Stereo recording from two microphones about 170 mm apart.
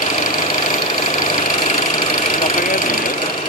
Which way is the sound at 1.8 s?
50° left (ahead or behind).